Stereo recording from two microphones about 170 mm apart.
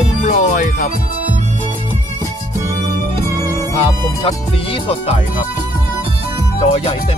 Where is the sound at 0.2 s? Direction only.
45° left (ahead or behind).